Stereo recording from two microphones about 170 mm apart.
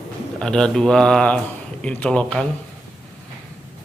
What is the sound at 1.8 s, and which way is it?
Speech, 5° left (ahead or behind).